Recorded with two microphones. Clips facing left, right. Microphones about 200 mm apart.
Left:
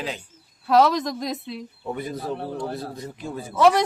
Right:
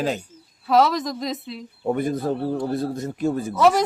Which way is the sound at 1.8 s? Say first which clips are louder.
Right 8 dB; 50° right (ahead or behind).